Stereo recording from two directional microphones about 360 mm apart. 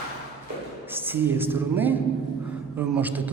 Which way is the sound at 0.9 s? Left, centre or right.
Centre.